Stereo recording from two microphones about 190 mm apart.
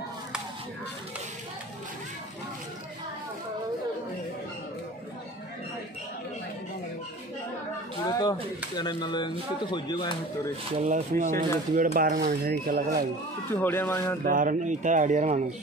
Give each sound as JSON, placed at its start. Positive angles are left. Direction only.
{"t": 8.0, "sound": "a sound", "side_deg": 20}
{"t": 8.7, "sound": "speech", "side_deg": 20}
{"t": 10.9, "sound": "speech", "side_deg": -40}
{"t": 13.5, "sound": "speech", "side_deg": 10}
{"t": 14.2, "sound": "speech", "side_deg": -45}